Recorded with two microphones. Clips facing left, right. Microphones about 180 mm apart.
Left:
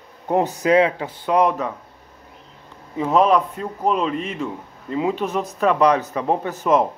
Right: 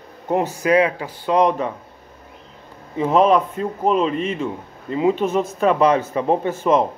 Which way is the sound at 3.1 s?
Centre (ahead or behind).